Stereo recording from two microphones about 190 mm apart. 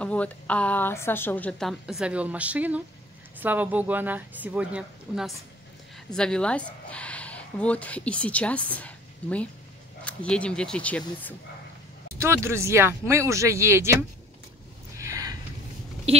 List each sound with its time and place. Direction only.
0.0 s a woman's voice: 5° left (ahead or behind)
12.2 s speech: 15° right (ahead or behind)
15.0 s a sound: 15° right (ahead or behind)